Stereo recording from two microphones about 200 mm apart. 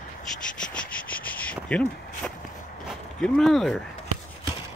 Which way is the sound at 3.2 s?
Centre (ahead or behind).